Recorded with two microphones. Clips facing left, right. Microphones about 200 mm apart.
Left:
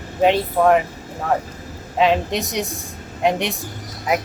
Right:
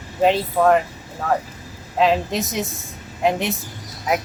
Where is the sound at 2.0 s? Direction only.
Centre (ahead or behind).